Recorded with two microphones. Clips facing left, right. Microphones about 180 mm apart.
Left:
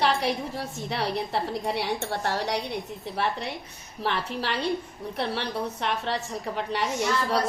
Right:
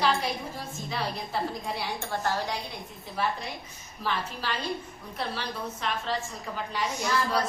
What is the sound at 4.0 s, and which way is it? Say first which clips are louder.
A woman's voice: left 3 dB; 65° left (ahead or behind).